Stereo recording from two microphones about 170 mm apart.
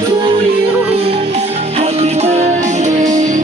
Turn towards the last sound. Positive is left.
turn(degrees=-45)  # may be behind; listen again after turning